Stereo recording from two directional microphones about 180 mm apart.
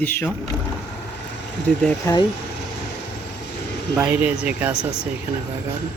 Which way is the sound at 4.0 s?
10° right (ahead or behind).